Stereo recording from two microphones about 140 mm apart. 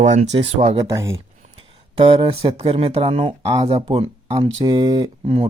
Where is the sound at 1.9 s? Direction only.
45° right (ahead or behind).